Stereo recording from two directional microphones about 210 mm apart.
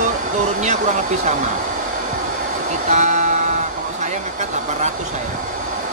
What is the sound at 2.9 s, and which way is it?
Speech, 35° right (ahead or behind).